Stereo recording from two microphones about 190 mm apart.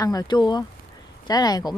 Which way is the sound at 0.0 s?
20° left (ahead or behind).